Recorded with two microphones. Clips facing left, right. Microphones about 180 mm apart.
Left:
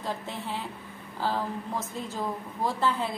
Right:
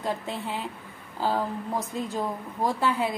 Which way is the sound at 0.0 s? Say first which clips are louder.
Right 4 dB; 15° right (ahead or behind).